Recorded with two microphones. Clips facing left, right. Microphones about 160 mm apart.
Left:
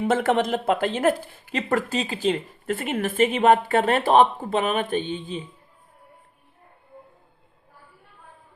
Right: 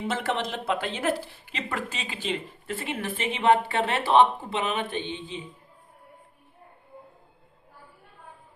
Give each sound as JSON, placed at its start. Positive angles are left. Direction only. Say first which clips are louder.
{"t": 0.0, "sound": "speech", "louder": "left 7 dB", "side_deg": 50}